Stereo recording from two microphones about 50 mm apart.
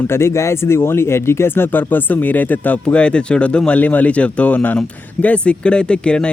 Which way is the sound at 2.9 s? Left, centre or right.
Left.